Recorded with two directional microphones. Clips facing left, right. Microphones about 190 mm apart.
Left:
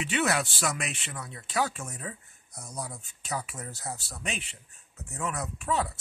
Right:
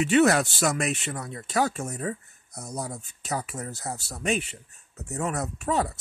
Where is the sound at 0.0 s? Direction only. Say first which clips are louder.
Right 8 dB; 45° right (ahead or behind).